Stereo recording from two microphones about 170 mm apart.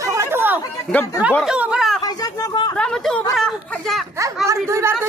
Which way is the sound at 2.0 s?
20° left (ahead or behind).